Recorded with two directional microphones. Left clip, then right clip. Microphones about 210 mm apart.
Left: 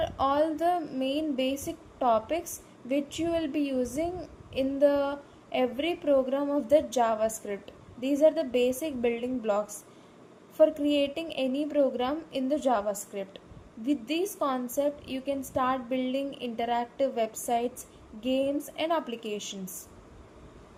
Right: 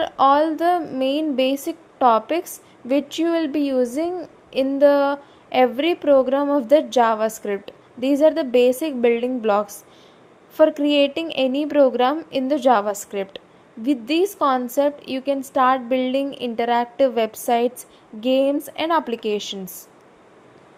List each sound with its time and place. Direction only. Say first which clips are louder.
0.0 s a woman's voice: right 10 dB; 15° right (ahead or behind)